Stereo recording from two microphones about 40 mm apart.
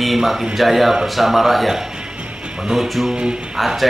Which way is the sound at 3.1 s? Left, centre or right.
Right.